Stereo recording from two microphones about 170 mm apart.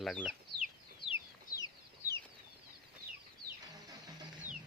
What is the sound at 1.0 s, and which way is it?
Chicken, 30° left (ahead or behind).